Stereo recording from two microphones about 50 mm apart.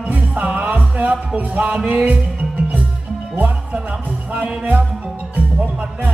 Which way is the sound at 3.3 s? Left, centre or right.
Right.